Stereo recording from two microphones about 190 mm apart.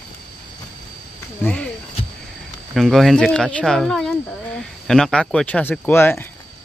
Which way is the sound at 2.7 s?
Centre (ahead or behind).